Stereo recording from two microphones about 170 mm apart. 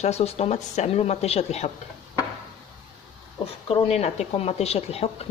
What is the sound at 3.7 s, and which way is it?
A woman's voice, 40° left (ahead or behind).